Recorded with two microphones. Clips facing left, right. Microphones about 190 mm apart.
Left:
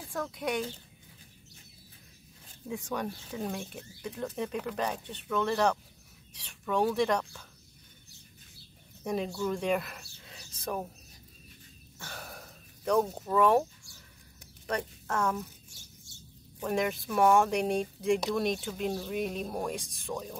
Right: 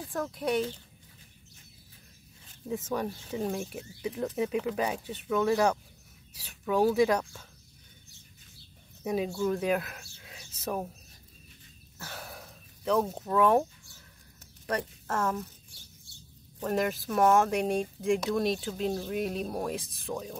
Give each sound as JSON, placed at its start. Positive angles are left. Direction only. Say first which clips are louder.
{"t": 0.1, "sound": "speech", "louder": "right 1 dB", "side_deg": 0}
{"t": 2.7, "sound": "speech", "louder": "right 3 dB", "side_deg": -5}
{"t": 9.0, "sound": "speech", "louder": "right 3 dB", "side_deg": -5}
{"t": 12.0, "sound": "a sound", "louder": "right 2 dB", "side_deg": 0}
{"t": 14.7, "sound": "a woman's voice", "louder": "right 1 dB", "side_deg": 0}
{"t": 16.1, "sound": "bird", "louder": "left 1 dB", "side_deg": 45}
{"t": 16.6, "sound": "speech", "louder": "right 1 dB", "side_deg": 0}